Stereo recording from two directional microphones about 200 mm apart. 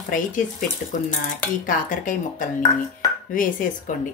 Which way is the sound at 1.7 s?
40° left (ahead or behind).